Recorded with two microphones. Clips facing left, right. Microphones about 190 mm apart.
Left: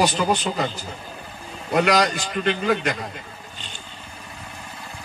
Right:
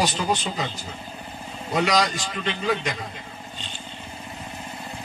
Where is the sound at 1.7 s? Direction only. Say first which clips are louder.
Left 3 dB; 60° left (ahead or behind).